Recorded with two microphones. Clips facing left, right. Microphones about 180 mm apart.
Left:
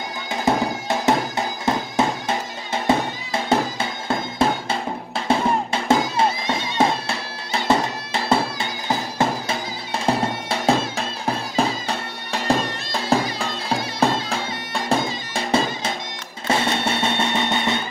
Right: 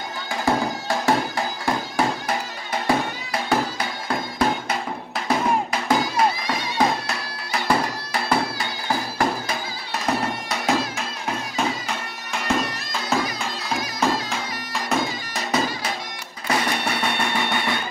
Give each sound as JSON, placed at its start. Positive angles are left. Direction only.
{"t": 0.3, "sound": "music", "side_deg": 20}
{"t": 4.1, "sound": "music", "side_deg": 25}